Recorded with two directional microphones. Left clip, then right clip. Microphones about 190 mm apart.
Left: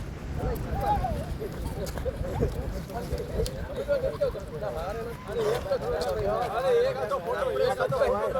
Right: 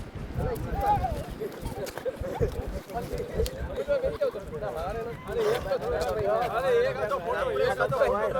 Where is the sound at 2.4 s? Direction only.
5° right (ahead or behind).